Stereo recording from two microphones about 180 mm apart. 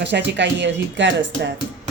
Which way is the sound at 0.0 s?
75° right (ahead or behind).